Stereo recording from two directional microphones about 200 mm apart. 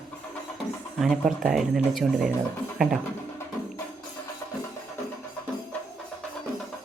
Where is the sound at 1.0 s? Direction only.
Centre (ahead or behind).